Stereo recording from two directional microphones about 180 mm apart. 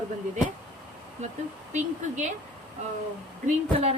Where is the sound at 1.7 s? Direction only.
40° right (ahead or behind).